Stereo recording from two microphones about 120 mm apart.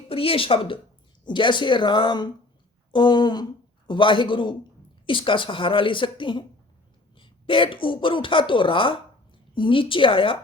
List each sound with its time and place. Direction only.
0.1 s a woman's voice: 50° left (ahead or behind)